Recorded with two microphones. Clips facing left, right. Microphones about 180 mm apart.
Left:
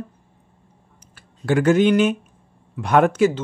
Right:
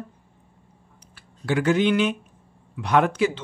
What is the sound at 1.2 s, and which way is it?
Speech, 45° left (ahead or behind).